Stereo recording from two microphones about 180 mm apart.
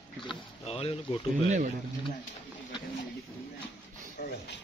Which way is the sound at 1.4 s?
45° right (ahead or behind).